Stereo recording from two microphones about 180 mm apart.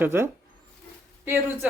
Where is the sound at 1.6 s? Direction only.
10° right (ahead or behind).